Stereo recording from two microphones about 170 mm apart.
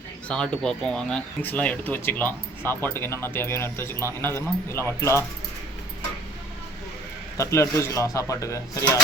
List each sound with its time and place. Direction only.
0.3 s speech: 5° left (ahead or behind)
7.3 s speech: 15° left (ahead or behind)